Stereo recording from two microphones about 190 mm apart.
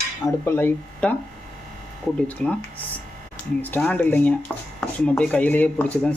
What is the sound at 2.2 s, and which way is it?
Speech, 10° left (ahead or behind).